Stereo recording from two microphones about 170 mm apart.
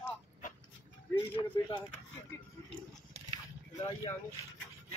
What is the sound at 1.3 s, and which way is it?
Speech, 30° left (ahead or behind).